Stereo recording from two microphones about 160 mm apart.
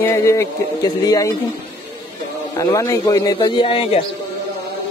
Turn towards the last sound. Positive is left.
turn(degrees=40)  # may be behind; listen again after turning